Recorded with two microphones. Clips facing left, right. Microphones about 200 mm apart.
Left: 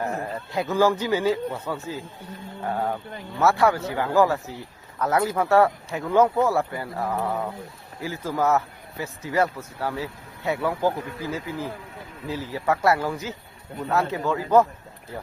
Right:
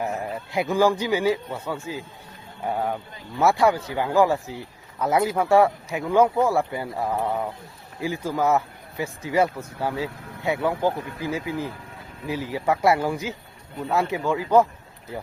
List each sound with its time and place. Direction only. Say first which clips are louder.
0.0 s speech: even; 15° right (ahead or behind)